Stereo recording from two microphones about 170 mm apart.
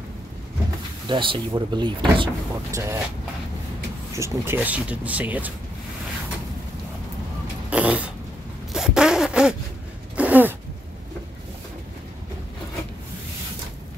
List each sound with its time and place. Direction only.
1.0 s speech: 30° right (ahead or behind)
2.7 s speech: 15° right (ahead or behind)
4.2 s speech: 15° right (ahead or behind)
7.7 s a sound: 5° right (ahead or behind)
8.7 s zipper: 5° right (ahead or behind)
10.1 s a sound: 10° right (ahead or behind)